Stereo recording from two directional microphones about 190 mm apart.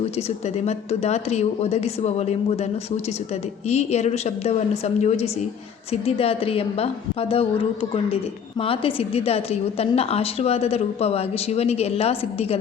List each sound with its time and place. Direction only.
0.2 s a woman's voice: 35° left (ahead or behind)
3.7 s a woman's voice: 35° left (ahead or behind)